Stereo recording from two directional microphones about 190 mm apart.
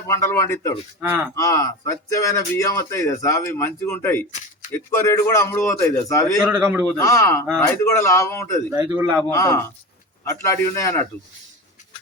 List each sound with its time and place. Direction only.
0.1 s speech: 15° left (ahead or behind)
1.0 s a man's voice: 10° right (ahead or behind)
1.4 s speech: 15° left (ahead or behind)
6.4 s a man's voice: 10° right (ahead or behind)
7.0 s speech: 15° left (ahead or behind)
8.7 s a man's voice: 10° right (ahead or behind)
9.3 s speech: 15° left (ahead or behind)